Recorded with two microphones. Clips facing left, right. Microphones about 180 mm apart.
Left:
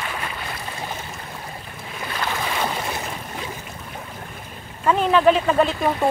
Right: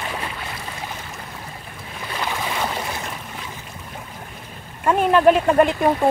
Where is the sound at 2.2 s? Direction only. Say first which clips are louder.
Even; 5° right (ahead or behind).